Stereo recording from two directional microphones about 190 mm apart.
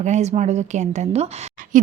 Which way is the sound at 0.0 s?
35° right (ahead or behind).